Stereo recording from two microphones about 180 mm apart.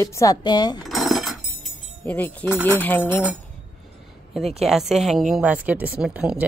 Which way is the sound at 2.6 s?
10° left (ahead or behind).